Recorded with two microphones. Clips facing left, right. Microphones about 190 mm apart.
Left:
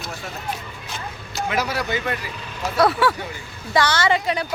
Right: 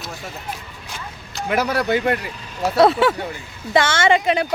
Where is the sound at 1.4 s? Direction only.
55° right (ahead or behind).